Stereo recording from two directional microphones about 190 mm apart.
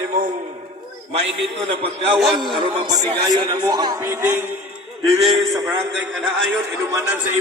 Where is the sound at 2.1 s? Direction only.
Centre (ahead or behind).